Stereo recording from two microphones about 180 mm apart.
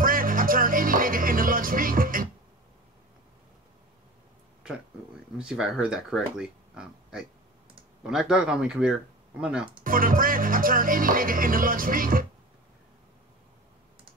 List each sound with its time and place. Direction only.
0.0 s music: 50° right (ahead or behind)
5.4 s speech: 5° right (ahead or behind)
9.8 s music: 50° right (ahead or behind)